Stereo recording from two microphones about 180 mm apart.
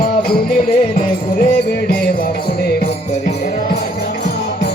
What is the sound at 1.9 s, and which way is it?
Music, 55° left (ahead or behind).